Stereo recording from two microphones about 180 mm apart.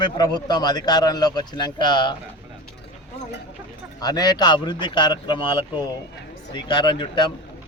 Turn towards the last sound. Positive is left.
turn(degrees=25)  # may be behind; listen again after turning